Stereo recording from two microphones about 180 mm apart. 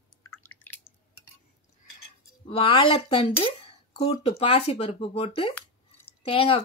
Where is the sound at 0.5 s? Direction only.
10° left (ahead or behind).